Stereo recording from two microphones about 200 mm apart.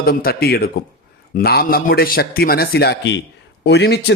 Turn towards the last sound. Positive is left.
turn(degrees=55)  # may be behind; listen again after turning